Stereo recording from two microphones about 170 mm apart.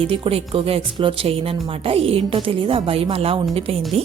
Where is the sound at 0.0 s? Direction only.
35° right (ahead or behind).